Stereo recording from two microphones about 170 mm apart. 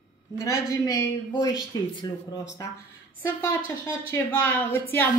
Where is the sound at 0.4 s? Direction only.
20° left (ahead or behind).